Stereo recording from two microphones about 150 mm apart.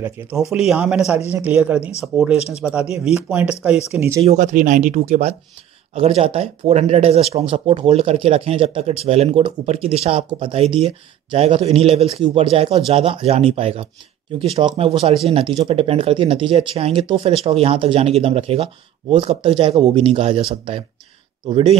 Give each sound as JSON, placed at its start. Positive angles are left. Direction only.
{"t": 0.5, "sound": "speech", "side_deg": -5}
{"t": 2.3, "sound": "speech", "side_deg": 45}
{"t": 2.6, "sound": "speech", "side_deg": -10}
{"t": 4.2, "sound": "speech", "side_deg": -50}
{"t": 5.9, "sound": "speech", "side_deg": -40}